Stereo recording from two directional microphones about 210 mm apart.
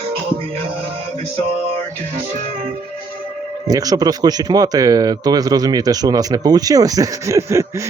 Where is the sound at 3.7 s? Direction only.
15° right (ahead or behind).